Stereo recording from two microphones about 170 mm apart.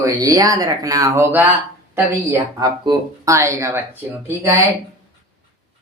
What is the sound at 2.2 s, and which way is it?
Speech, 20° right (ahead or behind).